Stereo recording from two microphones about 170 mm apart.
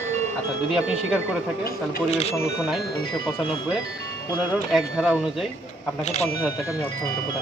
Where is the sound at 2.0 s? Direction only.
40° left (ahead or behind).